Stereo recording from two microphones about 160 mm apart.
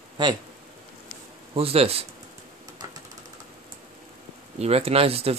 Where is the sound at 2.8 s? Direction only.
25° right (ahead or behind).